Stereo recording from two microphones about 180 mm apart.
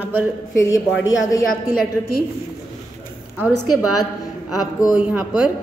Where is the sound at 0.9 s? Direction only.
90° left.